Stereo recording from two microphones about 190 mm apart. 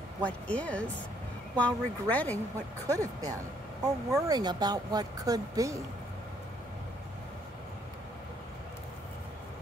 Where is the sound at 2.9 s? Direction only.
20° right (ahead or behind).